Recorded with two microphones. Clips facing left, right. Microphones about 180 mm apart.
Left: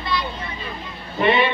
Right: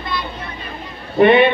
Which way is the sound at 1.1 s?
60° right (ahead or behind).